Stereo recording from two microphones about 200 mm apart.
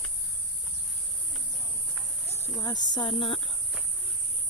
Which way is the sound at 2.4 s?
20° left (ahead or behind).